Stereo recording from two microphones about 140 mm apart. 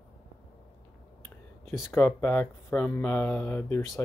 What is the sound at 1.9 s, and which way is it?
Speech, 15° left (ahead or behind).